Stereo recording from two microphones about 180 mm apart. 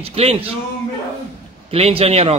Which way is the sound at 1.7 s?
35° right (ahead or behind).